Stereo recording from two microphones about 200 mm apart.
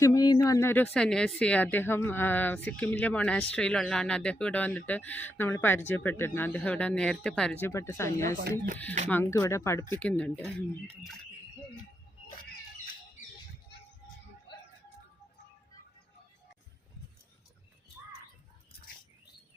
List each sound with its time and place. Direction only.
0.0 s speech: 20° left (ahead or behind)
8.4 s speech: 45° right (ahead or behind)
9.0 s speech: 10° left (ahead or behind)